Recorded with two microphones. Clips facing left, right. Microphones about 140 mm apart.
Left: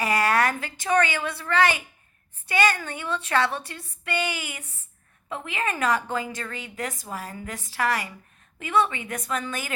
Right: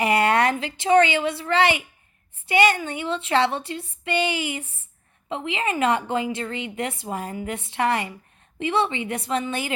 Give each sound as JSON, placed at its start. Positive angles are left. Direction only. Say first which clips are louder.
{"t": 0.0, "sound": "a woman's voice", "louder": "right 3 dB", "side_deg": -25}